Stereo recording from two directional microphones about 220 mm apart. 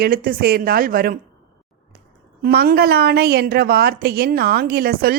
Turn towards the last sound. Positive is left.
turn(degrees=-45)  # may be behind; listen again after turning